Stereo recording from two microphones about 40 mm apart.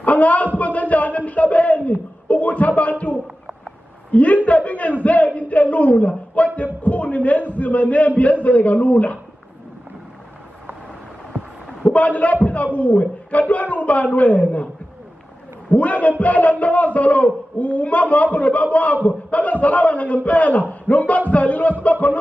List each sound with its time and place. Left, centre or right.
0.0 s a sound: left
8.2 s a man's voice: left
11.9 s a man's voice: left
15.7 s a man's voice: left